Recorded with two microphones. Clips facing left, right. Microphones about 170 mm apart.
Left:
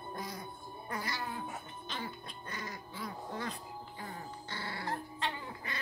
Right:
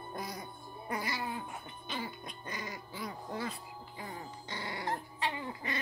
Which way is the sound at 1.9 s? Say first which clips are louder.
Right 2 dB; 10° right (ahead or behind).